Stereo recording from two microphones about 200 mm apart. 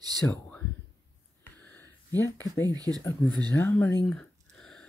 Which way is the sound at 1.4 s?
10° left (ahead or behind).